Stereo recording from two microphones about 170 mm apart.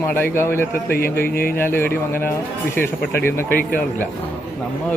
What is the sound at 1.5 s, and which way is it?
A man's voice, 15° left (ahead or behind).